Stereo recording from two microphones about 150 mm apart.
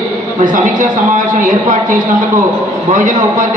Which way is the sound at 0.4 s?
60° right (ahead or behind).